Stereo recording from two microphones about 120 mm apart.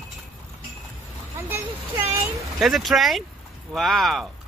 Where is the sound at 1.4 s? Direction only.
20° right (ahead or behind).